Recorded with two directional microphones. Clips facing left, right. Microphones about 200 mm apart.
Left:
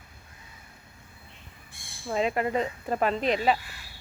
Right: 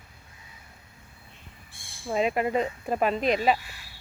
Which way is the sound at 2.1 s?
15° right (ahead or behind).